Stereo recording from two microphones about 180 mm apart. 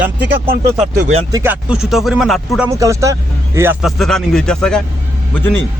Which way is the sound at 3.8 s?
Centre (ahead or behind).